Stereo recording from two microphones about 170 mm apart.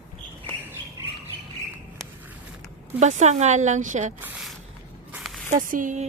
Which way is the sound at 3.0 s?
40° right (ahead or behind).